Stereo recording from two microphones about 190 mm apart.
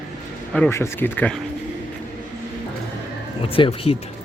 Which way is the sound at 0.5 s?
10° left (ahead or behind).